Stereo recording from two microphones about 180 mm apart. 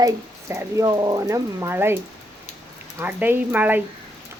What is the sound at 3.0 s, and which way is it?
Speech, 10° right (ahead or behind).